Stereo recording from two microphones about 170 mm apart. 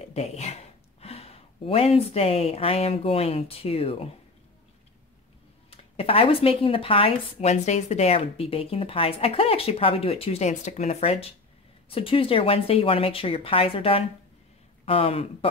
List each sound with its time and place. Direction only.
0.0 s speech: 40° left (ahead or behind)
5.7 s speech: 35° left (ahead or behind)